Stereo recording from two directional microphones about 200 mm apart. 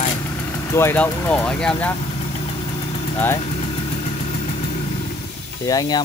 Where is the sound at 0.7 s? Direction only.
10° left (ahead or behind).